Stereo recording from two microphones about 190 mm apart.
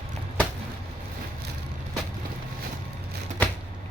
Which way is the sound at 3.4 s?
10° left (ahead or behind).